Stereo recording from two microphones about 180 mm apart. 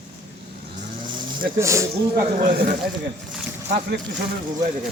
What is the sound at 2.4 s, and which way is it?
Speech, 50° right (ahead or behind).